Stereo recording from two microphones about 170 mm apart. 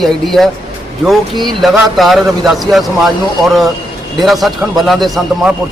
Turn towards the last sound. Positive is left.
turn(degrees=0)  # may be behind; listen again after turning